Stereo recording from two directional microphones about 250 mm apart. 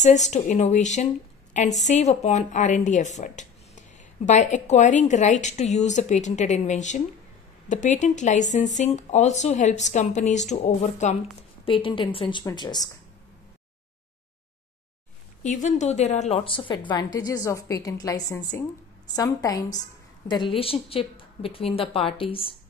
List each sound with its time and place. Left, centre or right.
0.0 s speech: left
15.4 s a woman's voice: left